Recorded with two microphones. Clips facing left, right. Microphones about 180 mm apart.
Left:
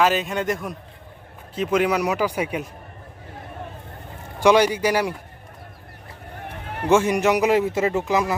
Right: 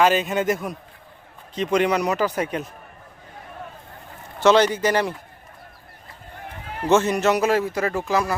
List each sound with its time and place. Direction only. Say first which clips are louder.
0.0 s a man's voice: right 2 dB; centre (ahead or behind)
4.4 s speech: even; 10° left (ahead or behind)
6.5 s run: left 1 dB; 60° left (ahead or behind)
6.8 s speech: even; 10° left (ahead or behind)